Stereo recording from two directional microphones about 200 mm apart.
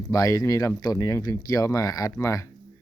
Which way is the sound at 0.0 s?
15° left (ahead or behind).